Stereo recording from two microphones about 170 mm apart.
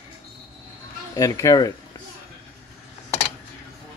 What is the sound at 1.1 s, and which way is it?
Speech, 20° left (ahead or behind).